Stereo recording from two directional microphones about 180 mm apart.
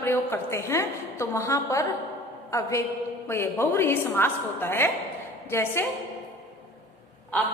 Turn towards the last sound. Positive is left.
turn(degrees=10)  # may be behind; listen again after turning